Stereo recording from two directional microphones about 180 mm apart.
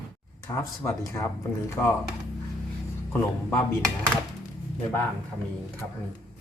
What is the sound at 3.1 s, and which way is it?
Speech, 15° left (ahead or behind).